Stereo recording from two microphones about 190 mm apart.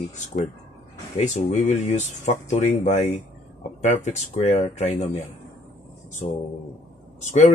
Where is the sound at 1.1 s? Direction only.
35° left (ahead or behind).